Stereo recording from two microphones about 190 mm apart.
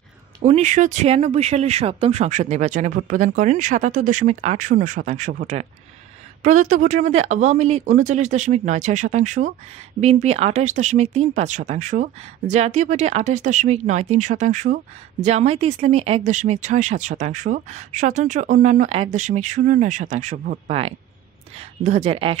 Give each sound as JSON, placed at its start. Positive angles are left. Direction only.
{"t": 0.4, "sound": "speech", "side_deg": -35}
{"t": 6.4, "sound": "speech", "side_deg": -40}